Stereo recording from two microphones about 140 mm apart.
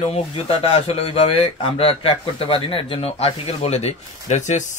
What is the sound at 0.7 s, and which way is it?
A man's voice, 45° left (ahead or behind).